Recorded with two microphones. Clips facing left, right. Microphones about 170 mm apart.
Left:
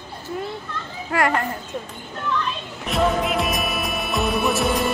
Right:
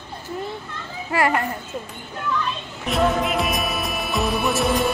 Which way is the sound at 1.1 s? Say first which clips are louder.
Even; 5° right (ahead or behind).